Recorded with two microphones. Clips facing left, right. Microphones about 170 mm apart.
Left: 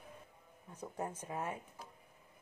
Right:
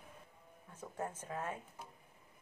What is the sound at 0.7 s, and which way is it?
Speech, 10° left (ahead or behind).